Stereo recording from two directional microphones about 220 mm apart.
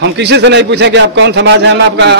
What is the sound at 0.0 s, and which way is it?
A man's voice, 50° right (ahead or behind).